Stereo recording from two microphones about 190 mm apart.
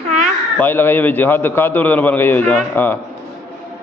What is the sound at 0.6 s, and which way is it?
A man's voice, 10° left (ahead or behind).